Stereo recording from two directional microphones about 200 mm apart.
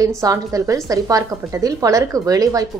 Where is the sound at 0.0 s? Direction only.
15° right (ahead or behind).